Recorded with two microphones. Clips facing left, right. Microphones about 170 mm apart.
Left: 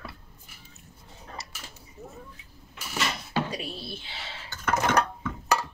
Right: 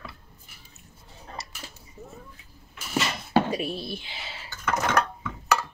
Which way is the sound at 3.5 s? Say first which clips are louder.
Right 6 dB; 15° right (ahead or behind).